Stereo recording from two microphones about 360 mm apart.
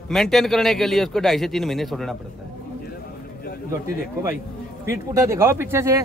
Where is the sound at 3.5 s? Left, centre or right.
Left.